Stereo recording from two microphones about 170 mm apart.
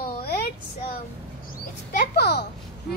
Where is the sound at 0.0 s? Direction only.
65° left (ahead or behind).